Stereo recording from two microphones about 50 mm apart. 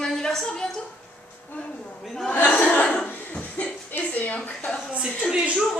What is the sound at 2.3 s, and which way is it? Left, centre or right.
Chuckle, left.